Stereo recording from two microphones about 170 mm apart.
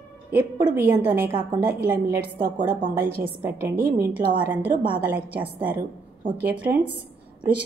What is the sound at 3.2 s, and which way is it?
A woman's voice, 15° right (ahead or behind).